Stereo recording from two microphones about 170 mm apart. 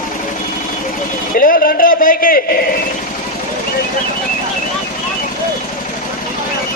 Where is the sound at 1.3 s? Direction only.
60° left (ahead or behind).